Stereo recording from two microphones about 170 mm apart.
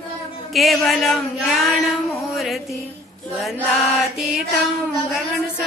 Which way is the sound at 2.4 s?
Centre (ahead or behind).